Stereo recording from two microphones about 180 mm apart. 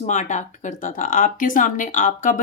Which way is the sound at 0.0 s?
45° left (ahead or behind).